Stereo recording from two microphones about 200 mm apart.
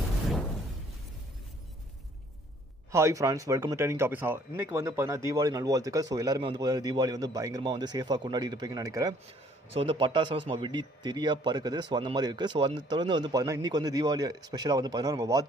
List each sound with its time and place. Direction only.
2.9 s a man's voice: 15° right (ahead or behind)